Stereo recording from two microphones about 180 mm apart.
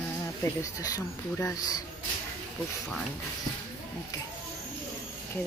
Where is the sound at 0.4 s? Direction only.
15° left (ahead or behind).